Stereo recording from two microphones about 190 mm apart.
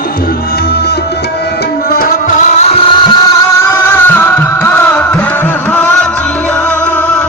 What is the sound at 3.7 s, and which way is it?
Music, 10° left (ahead or behind).